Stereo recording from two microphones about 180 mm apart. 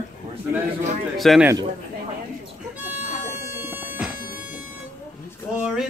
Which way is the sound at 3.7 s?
5° right (ahead or behind).